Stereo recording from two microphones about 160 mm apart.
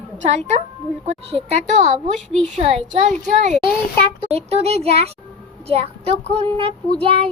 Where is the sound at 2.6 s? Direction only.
40° right (ahead or behind).